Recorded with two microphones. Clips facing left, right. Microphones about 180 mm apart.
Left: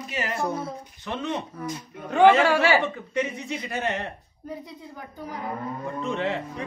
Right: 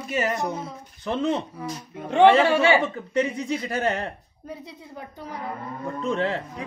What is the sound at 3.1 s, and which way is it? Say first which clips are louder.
Speech: right 4 dB; 35° right (ahead or behind).